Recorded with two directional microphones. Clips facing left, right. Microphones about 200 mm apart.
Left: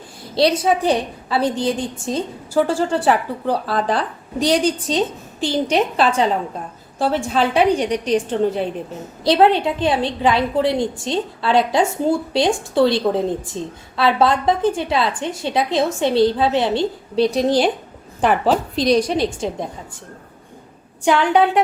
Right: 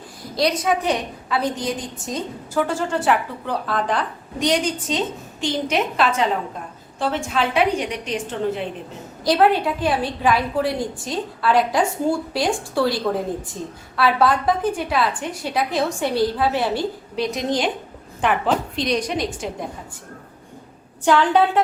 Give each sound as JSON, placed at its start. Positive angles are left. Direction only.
{"t": 0.3, "sound": "a woman's voice", "side_deg": 30}
{"t": 21.0, "sound": "a woman's voice", "side_deg": 15}